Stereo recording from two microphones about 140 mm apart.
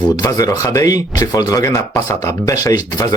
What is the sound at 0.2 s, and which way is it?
Speech, 25° left (ahead or behind).